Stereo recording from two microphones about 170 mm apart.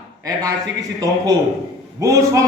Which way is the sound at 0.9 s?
20° right (ahead or behind).